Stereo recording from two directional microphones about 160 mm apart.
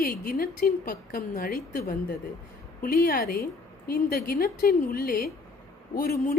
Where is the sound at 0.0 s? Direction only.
65° left (ahead or behind).